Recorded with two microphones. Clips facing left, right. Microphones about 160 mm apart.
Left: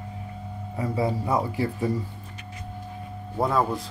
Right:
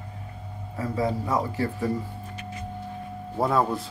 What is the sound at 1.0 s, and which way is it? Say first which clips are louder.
Speech: left 1 dB; 15° left (ahead or behind).